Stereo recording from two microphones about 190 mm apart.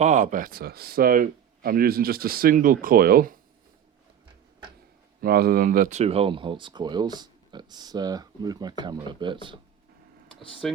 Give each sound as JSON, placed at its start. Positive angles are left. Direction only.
{"t": 0.0, "sound": "speech", "side_deg": -40}
{"t": 5.2, "sound": "speech", "side_deg": -55}
{"t": 10.6, "sound": "speech", "side_deg": 0}